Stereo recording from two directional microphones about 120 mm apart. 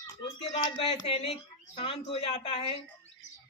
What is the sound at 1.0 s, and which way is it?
A woman's voice, 55° left (ahead or behind).